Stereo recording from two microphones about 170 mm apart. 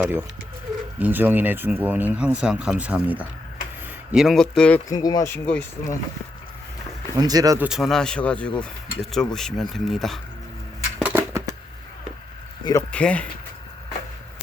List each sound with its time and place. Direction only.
0.0 s speech: 15° right (ahead or behind); by 4.8 s 5° left (ahead or behind)
4.9 s speech: 20° left (ahead or behind)
7.2 s speech: 20° right (ahead or behind)
7.6 s speech: centre (ahead or behind)
11.0 s a sound: 15° right (ahead or behind)
12.9 s speech: 5° left (ahead or behind)